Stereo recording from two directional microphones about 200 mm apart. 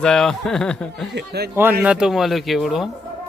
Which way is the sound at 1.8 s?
5° right (ahead or behind).